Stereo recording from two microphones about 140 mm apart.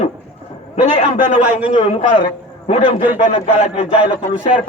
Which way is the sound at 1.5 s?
10° right (ahead or behind).